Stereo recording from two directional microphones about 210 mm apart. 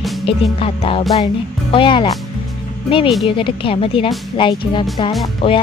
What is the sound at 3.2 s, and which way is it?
Speech, 25° left (ahead or behind).